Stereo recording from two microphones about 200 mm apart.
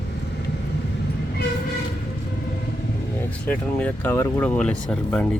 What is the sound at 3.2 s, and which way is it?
Speech, 10° left (ahead or behind).